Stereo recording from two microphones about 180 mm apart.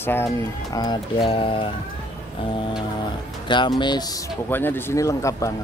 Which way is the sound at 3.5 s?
25° left (ahead or behind).